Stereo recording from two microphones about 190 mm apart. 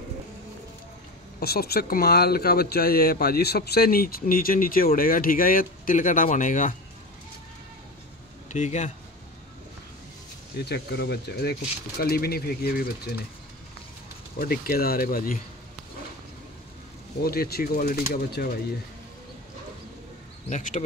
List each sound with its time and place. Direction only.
1.4 s speech: 55° left (ahead or behind)
8.5 s speech: 40° left (ahead or behind)
10.6 s speech: 60° left (ahead or behind)
14.4 s speech: 50° left (ahead or behind)
17.2 s speech: 55° left (ahead or behind)
20.4 s speech: 40° left (ahead or behind)